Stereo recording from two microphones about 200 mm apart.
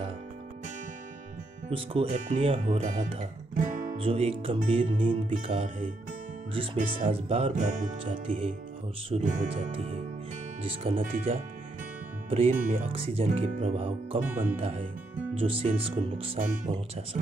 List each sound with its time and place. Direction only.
1.7 s speech: 25° right (ahead or behind)
2.0 s music: 40° right (ahead or behind)
2.4 s speech: 30° right (ahead or behind)
3.9 s speech: 30° right (ahead or behind)
9.1 s music: 40° right (ahead or behind)
10.6 s speech: 30° right (ahead or behind)